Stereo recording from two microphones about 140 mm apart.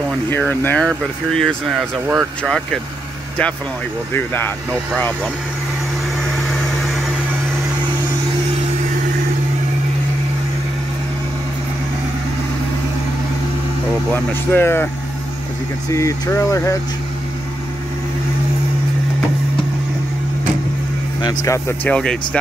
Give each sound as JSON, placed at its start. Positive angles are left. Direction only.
{"t": 0.3, "sound": "speech", "side_deg": 15}
{"t": 4.1, "sound": "speech", "side_deg": 15}
{"t": 6.2, "sound": "vehicle", "side_deg": 5}
{"t": 14.1, "sound": "speech", "side_deg": 15}
{"t": 15.9, "sound": "speech", "side_deg": 20}
{"t": 21.2, "sound": "speech", "side_deg": 25}
{"t": 21.8, "sound": "speech", "side_deg": 5}